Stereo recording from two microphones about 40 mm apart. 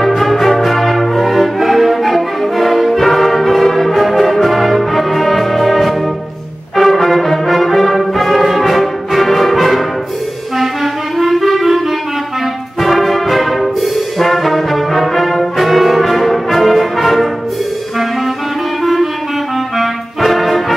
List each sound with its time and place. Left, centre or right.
0.0 s music: centre
6.8 s brass instrument: centre
10.6 s clarinet: centre
12.8 s brass instrument: centre
19.8 s brass instrument: centre